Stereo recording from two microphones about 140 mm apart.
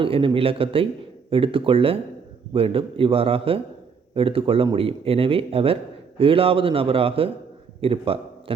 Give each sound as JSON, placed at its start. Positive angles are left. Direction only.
{"t": 0.0, "sound": "a man's voice", "side_deg": -40}